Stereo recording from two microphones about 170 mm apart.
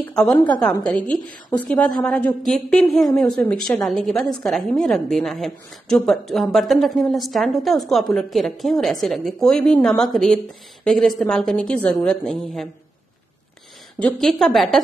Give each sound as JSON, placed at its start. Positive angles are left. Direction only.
{"t": 0.0, "sound": "a woman's voice", "side_deg": 5}
{"t": 13.9, "sound": "a woman's voice", "side_deg": 5}